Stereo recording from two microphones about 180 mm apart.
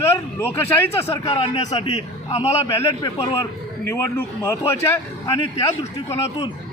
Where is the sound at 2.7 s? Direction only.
15° left (ahead or behind).